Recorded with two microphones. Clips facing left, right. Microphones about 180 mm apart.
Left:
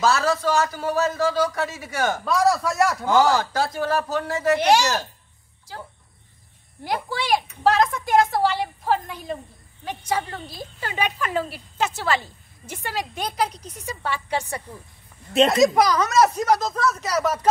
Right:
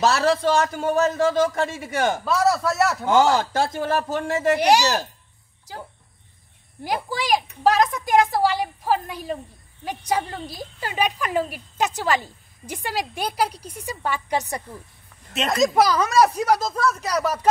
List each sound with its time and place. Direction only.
0.0 s a man's voice: 30° right (ahead or behind)
2.2 s a man's voice: centre (ahead or behind)
3.1 s a man's voice: 20° right (ahead or behind)
4.7 s speech: 35° right (ahead or behind)
6.8 s a woman's voice: 10° right (ahead or behind)
14.7 s speech: 15° left (ahead or behind)
15.5 s a woman's voice: centre (ahead or behind)